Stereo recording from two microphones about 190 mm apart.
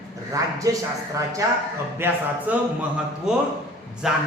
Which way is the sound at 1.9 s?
10° right (ahead or behind).